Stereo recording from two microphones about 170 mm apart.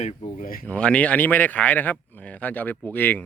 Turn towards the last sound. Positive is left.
turn(degrees=10)  # may be behind; listen again after turning